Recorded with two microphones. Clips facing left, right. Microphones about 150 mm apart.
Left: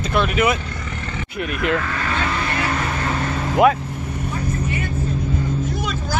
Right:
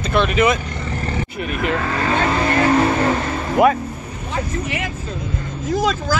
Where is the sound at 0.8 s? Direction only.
35° right (ahead or behind).